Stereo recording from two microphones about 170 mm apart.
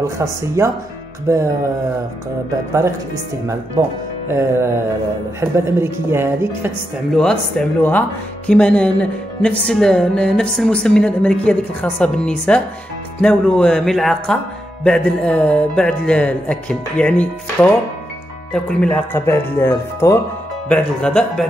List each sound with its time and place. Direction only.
0.0 s a woman's voice: 15° right (ahead or behind)
3.8 s a woman's voice: 15° right (ahead or behind)
7.2 s a woman's voice: 5° left (ahead or behind)